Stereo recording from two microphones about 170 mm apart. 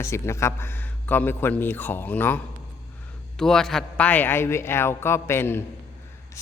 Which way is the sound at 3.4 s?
Centre (ahead or behind).